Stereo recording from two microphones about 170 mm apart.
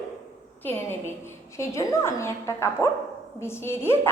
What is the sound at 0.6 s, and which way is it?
A woman's voice, 15° left (ahead or behind).